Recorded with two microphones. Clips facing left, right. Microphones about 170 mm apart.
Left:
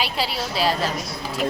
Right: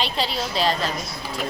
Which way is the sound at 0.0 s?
5° left (ahead or behind).